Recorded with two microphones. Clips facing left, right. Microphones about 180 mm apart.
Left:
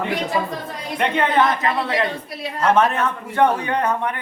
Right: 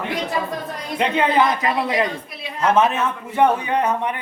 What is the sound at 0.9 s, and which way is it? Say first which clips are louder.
Speech: right 1 dB; 10° right (ahead or behind).